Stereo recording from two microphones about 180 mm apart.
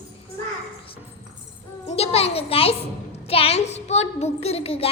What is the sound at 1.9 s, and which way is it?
A child's voice, 35° left (ahead or behind).